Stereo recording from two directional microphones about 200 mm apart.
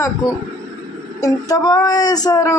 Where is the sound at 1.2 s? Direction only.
20° left (ahead or behind).